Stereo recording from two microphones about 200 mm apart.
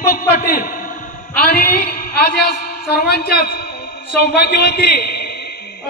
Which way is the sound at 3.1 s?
50° left (ahead or behind).